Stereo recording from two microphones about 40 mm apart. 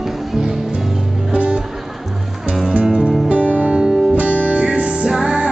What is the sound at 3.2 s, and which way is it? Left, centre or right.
Music, right.